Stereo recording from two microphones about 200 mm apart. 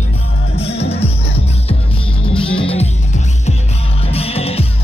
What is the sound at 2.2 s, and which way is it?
Music, 25° left (ahead or behind).